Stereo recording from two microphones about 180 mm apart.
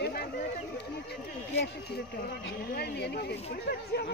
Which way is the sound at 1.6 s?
65° left (ahead or behind).